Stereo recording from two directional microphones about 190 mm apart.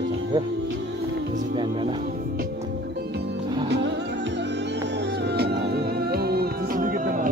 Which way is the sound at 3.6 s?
65° right (ahead or behind).